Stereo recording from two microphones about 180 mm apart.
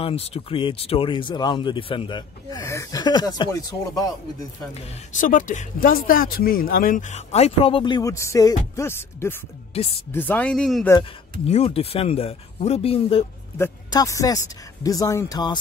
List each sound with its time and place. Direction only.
0.0 s speech: 35° left (ahead or behind)
5.1 s speech: 45° left (ahead or behind); by 9.4 s 15° left (ahead or behind)
9.7 s speech: 35° left (ahead or behind)
10.1 s speech: 10° left (ahead or behind)
11.4 s speech: 35° left (ahead or behind)
13.6 s speech: 20° left (ahead or behind)